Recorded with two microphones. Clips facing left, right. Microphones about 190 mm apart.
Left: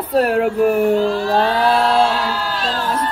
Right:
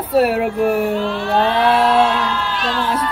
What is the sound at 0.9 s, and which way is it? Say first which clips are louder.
Speech: left 3 dB; 35° left (ahead or behind).